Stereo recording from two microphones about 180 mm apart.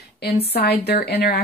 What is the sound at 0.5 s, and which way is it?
Speech, 60° left (ahead or behind).